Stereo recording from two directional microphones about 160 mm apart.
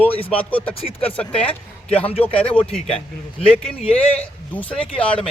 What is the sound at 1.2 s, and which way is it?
Speech, 5° left (ahead or behind).